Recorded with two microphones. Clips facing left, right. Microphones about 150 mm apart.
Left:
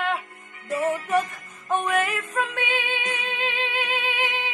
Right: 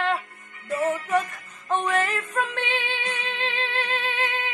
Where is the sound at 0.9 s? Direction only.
15° left (ahead or behind).